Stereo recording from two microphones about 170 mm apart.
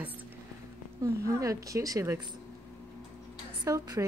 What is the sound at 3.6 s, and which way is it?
Speech, 20° right (ahead or behind).